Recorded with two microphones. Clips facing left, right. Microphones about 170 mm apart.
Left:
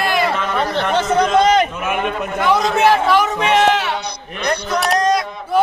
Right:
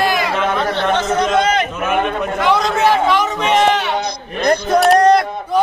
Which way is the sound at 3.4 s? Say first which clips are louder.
Even; centre (ahead or behind).